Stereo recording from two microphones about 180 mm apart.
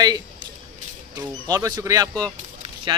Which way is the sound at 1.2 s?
20° right (ahead or behind).